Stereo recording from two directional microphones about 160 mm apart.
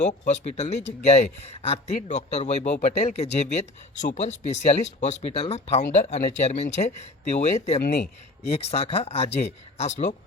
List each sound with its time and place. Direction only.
0.0 s speech: 45° left (ahead or behind)